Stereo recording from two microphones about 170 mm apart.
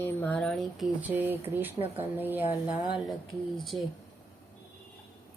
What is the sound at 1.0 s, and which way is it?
Speech, 10° right (ahead or behind).